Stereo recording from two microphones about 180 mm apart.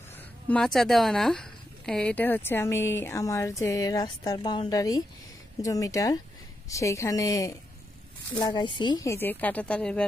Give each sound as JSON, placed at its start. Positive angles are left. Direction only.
{"t": 0.5, "sound": "speech", "side_deg": 0}